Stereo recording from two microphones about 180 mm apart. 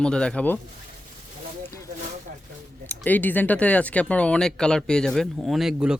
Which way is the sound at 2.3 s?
45° right (ahead or behind).